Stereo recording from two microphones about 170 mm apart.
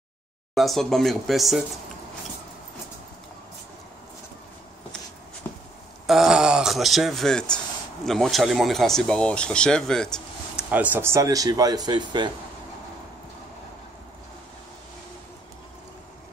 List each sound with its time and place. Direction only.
0.6 s speech: centre (ahead or behind)
5.4 s a sound: 15° left (ahead or behind)
6.0 s speech: 5° right (ahead or behind)
10.7 s speech: 10° right (ahead or behind); by 12.3 s 25° right (ahead or behind)